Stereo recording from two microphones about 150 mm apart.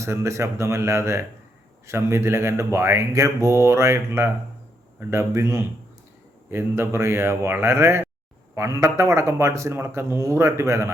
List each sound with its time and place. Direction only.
0.0 s speech: 20° right (ahead or behind)